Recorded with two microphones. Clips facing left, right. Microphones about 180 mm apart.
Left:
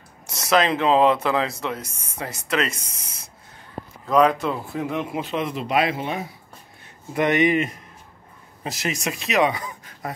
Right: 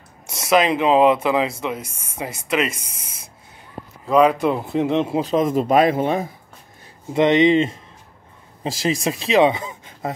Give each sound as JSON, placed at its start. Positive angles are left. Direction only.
{"t": 0.5, "sound": "speech", "side_deg": -10}
{"t": 4.0, "sound": "speech", "side_deg": -5}
{"t": 7.2, "sound": "speech", "side_deg": -25}